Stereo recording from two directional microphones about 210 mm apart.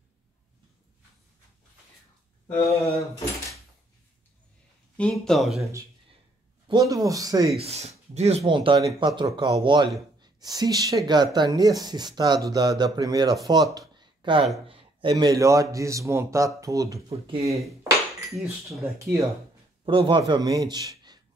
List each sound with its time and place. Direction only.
2.4 s speech: 15° left (ahead or behind)
4.9 s speech: 5° left (ahead or behind)
6.9 s a man's voice: 15° right (ahead or behind)
7.5 s speech: 30° right (ahead or behind)
13.7 s a sound: 20° right (ahead or behind)
14.7 s a man's voice: 25° right (ahead or behind)
17.1 s speech: 30° right (ahead or behind)
18.3 s speech: centre (ahead or behind)
19.8 s a man's voice: 25° right (ahead or behind)